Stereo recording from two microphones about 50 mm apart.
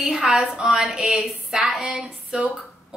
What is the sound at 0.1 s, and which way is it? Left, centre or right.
Speech, centre.